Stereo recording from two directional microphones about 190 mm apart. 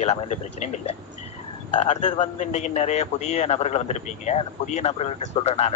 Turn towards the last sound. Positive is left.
turn(degrees=35)  # may be behind; listen again after turning